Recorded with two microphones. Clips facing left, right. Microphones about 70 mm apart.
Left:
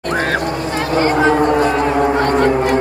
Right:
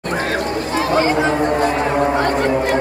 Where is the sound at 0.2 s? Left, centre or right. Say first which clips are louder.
Left 2 dB; left.